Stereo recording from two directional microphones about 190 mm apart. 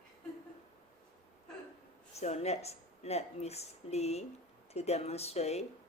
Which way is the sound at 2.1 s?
35° left (ahead or behind).